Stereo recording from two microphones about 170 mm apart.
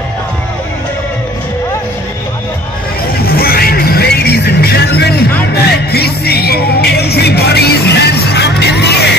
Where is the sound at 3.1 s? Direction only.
65° left (ahead or behind).